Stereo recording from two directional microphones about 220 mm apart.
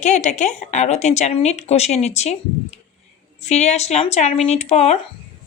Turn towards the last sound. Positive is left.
turn(degrees=30)  # may be behind; listen again after turning